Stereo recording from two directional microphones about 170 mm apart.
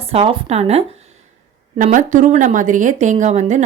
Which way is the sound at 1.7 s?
50° right (ahead or behind).